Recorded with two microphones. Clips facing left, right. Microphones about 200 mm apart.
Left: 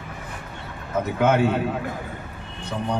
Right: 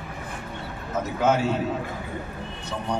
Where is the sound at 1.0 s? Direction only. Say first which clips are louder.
Left 3 dB; 60° left (ahead or behind).